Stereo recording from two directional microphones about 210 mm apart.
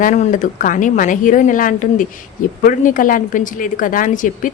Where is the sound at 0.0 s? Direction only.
35° left (ahead or behind).